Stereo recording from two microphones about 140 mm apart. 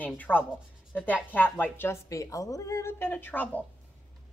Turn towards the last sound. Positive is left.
turn(degrees=15)  # may be behind; listen again after turning